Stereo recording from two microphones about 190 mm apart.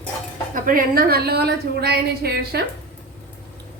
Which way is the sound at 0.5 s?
45° right (ahead or behind).